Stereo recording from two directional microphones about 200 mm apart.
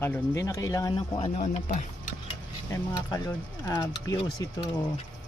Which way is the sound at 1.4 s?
40° left (ahead or behind).